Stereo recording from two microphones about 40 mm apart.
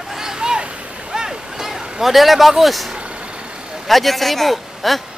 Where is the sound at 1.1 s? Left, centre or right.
Centre.